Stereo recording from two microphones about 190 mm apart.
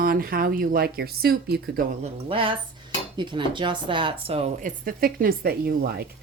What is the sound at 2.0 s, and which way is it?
Speech, 30° right (ahead or behind).